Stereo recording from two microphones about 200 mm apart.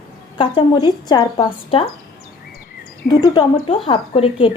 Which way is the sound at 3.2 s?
20° left (ahead or behind).